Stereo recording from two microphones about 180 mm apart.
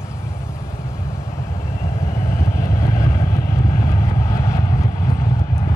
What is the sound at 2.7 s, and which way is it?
Vehicle, 20° left (ahead or behind).